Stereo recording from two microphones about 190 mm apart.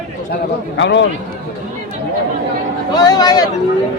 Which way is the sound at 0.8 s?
70° left (ahead or behind).